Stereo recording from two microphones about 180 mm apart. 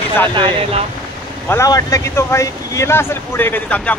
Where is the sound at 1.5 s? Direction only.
15° left (ahead or behind).